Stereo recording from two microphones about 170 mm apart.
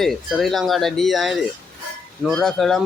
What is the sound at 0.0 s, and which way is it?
Speech, centre (ahead or behind).